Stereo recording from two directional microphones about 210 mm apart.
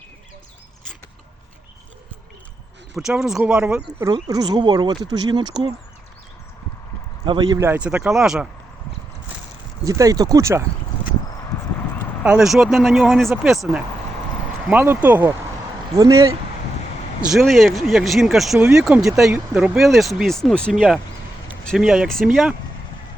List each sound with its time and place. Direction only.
2.9 s speech: centre (ahead or behind)
4.0 s speech: 15° right (ahead or behind)
7.3 s speech: 20° right (ahead or behind); by 8.4 s centre (ahead or behind)
9.8 s speech: 15° right (ahead or behind)
12.2 s speech: 5° right (ahead or behind)
17.3 s speech: centre (ahead or behind)